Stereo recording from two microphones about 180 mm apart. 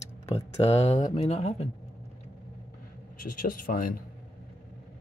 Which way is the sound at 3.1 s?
50° left (ahead or behind).